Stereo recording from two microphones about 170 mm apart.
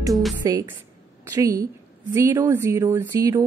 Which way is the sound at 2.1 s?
20° right (ahead or behind).